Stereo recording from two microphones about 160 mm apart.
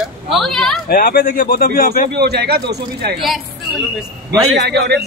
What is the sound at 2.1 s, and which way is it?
Speech, 90° right.